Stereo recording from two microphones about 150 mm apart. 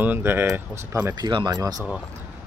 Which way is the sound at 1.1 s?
30° right (ahead or behind).